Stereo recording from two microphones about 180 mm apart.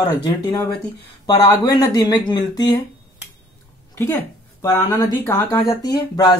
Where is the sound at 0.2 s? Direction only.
20° left (ahead or behind).